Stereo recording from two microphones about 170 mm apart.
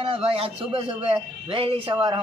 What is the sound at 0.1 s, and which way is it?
A man's voice, 35° right (ahead or behind).